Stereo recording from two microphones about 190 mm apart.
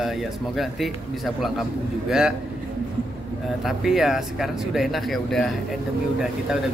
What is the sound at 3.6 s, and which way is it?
Speech, centre (ahead or behind).